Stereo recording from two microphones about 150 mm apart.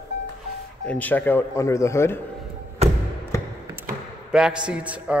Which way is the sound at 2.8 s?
45° right (ahead or behind).